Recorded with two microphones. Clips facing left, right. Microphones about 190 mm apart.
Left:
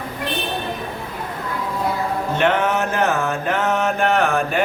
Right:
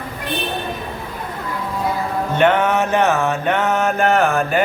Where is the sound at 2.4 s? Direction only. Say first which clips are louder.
Right 4 dB; centre (ahead or behind).